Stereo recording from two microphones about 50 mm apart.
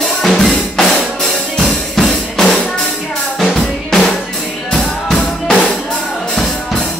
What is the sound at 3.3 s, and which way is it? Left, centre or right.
Drum, centre.